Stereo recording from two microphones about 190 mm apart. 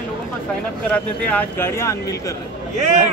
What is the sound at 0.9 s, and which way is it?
Speech, 5° left (ahead or behind).